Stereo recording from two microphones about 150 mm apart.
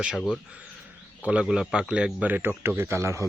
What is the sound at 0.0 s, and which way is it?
A man's voice, 5° right (ahead or behind).